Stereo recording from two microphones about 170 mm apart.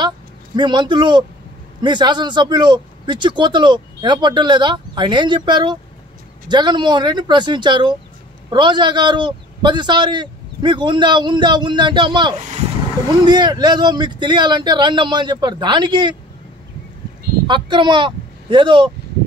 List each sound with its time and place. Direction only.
0.6 s speech: 25° right (ahead or behind)
17.5 s speech: 30° right (ahead or behind)